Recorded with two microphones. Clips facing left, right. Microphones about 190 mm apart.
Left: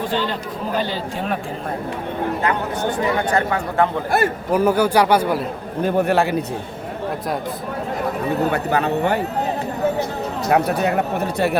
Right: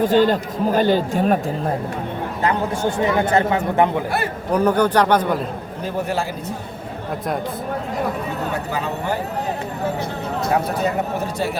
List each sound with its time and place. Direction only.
0.0 s speech: 45° right (ahead or behind)
3.2 s a man's voice: 20° right (ahead or behind)
4.5 s a man's voice: 5° left (ahead or behind)
5.8 s speech: 60° left (ahead or behind)
8.5 s speech: 65° left (ahead or behind)
10.5 s speech: 65° left (ahead or behind)